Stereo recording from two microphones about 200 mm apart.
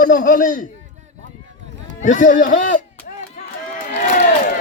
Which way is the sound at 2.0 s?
40° left (ahead or behind).